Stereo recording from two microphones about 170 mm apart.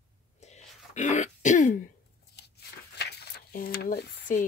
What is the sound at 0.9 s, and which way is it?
Throat clearing, 45° left (ahead or behind).